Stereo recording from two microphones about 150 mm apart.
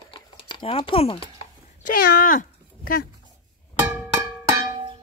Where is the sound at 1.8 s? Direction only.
80° left.